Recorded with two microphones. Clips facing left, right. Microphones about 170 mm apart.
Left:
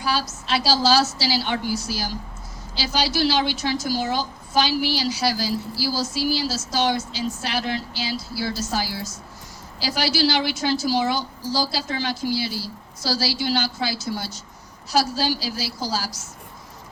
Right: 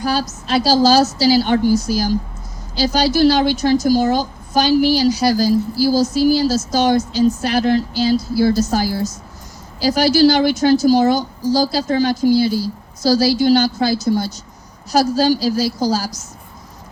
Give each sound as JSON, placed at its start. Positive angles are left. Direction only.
{"t": 0.0, "sound": "a woman's voice", "side_deg": -45}
{"t": 15.1, "sound": "a woman's voice", "side_deg": -45}